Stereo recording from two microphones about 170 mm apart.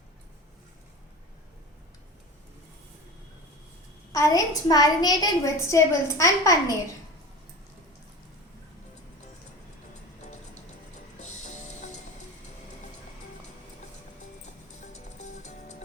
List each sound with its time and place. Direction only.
4.1 s a woman's voice: 20° left (ahead or behind)
11.2 s music: 45° left (ahead or behind)
14.4 s music: 45° left (ahead or behind)